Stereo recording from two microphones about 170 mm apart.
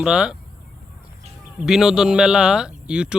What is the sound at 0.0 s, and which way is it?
Speech, 5° right (ahead or behind).